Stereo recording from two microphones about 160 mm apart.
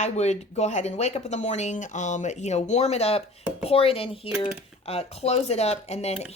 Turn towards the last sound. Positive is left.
turn(degrees=40)  # may be behind; listen again after turning